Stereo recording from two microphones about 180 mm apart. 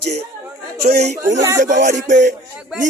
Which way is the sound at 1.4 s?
20° right (ahead or behind).